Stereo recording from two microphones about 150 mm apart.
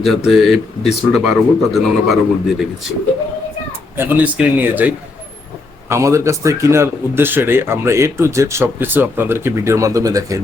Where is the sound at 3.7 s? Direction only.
15° right (ahead or behind).